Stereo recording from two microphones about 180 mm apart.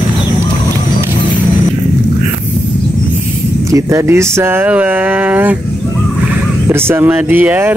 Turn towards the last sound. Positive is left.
turn(degrees=-10)  # may be behind; listen again after turning